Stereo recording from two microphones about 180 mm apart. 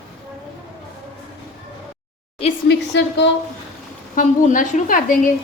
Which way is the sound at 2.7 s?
80° left.